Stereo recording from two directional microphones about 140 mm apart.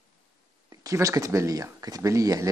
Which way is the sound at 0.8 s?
25° right (ahead or behind).